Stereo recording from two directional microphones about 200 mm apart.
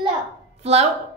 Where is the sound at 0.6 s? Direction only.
30° right (ahead or behind).